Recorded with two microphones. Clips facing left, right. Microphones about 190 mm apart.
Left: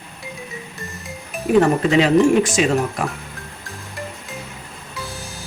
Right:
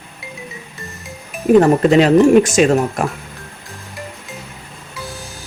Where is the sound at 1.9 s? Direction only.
45° right (ahead or behind).